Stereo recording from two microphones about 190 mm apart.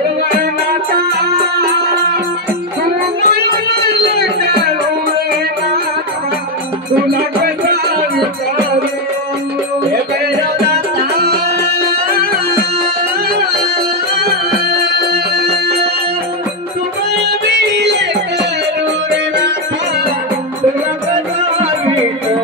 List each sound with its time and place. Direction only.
0.4 s music: 50° right (ahead or behind)
2.8 s music: 55° right (ahead or behind)
7.1 s music: 55° right (ahead or behind)
10.7 s music: 55° right (ahead or behind)
14.1 s music: 55° right (ahead or behind)
17.5 s music: 65° right (ahead or behind)